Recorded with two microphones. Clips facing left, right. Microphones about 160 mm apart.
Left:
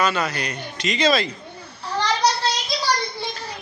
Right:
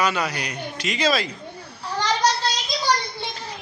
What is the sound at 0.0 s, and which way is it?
A man's voice, 10° right (ahead or behind).